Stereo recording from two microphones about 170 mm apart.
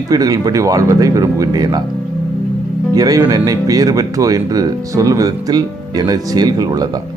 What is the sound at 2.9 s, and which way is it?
Speech, 20° right (ahead or behind).